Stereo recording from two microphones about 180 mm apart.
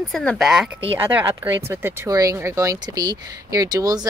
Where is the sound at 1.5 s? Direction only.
15° right (ahead or behind).